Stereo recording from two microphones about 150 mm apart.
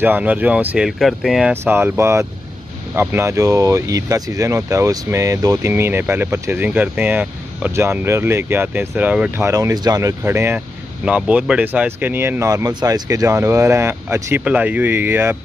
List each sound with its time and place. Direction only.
0.0 s speech: 10° right (ahead or behind)
1.5 s speech: 15° right (ahead or behind)